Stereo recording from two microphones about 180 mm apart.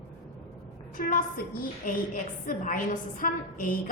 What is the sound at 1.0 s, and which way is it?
Speech, 50° left (ahead or behind).